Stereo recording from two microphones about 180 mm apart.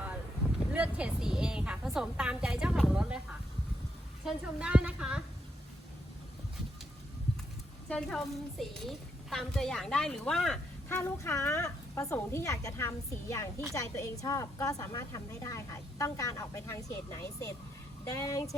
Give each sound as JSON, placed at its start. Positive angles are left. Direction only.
{"t": 0.7, "sound": "a woman's voice", "side_deg": -5}
{"t": 4.3, "sound": "a woman's voice", "side_deg": -5}
{"t": 7.9, "sound": "a woman's voice", "side_deg": 5}
{"t": 10.8, "sound": "a woman's voice", "side_deg": 15}